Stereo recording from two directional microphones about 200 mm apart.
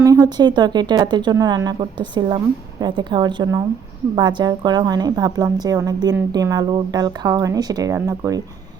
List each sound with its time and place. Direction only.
0.0 s speech: 20° right (ahead or behind)